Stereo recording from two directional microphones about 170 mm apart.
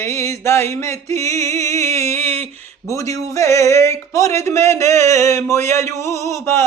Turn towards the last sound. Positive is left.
turn(degrees=15)  # may be behind; listen again after turning